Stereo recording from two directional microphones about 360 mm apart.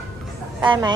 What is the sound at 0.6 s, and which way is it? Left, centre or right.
Speech, centre.